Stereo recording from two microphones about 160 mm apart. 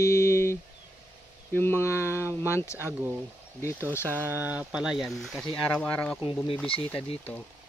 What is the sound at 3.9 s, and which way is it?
Speech, 15° left (ahead or behind).